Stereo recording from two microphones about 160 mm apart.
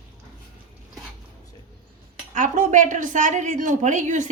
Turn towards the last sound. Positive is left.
turn(degrees=-50)  # may be behind; listen again after turning